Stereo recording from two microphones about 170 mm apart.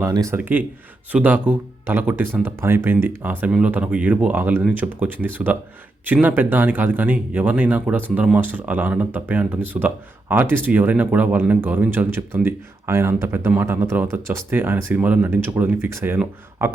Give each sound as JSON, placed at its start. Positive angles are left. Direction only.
{"t": 0.0, "sound": "speech", "side_deg": -20}